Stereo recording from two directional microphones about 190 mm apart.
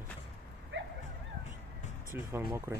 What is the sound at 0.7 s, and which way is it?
Dog, 80° right.